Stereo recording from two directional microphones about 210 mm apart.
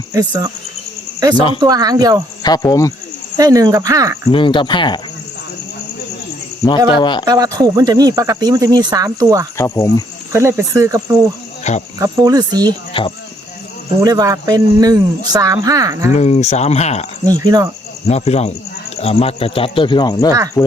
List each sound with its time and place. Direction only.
0.1 s speech: 15° right (ahead or behind)
2.4 s speech: 15° left (ahead or behind)
3.3 s speech: 15° right (ahead or behind)
4.3 s speech: 25° left (ahead or behind)
6.9 s speech: 20° left (ahead or behind)
7.3 s speech: 15° right (ahead or behind)
9.6 s speech: 15° left (ahead or behind)
10.3 s speech: 15° right (ahead or behind)
12.9 s speech: 25° left (ahead or behind)
14.0 s speech: 15° right (ahead or behind)
16.1 s speech: 30° left (ahead or behind)
17.2 s speech: 15° right (ahead or behind)
18.1 s speech: 30° left (ahead or behind); by 20.7 s 15° left (ahead or behind)